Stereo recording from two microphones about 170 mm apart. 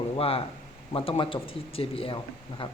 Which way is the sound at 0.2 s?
35° left (ahead or behind).